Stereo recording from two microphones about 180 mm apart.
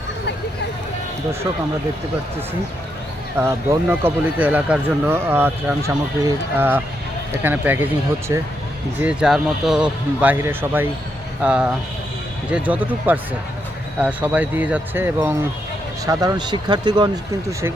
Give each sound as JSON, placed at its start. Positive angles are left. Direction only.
{"t": 3.3, "sound": "speech", "side_deg": -10}
{"t": 9.0, "sound": "speech", "side_deg": -5}
{"t": 16.0, "sound": "speech", "side_deg": -20}